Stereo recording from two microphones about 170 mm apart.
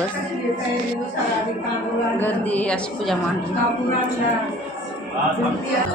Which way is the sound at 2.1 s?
10° left (ahead or behind).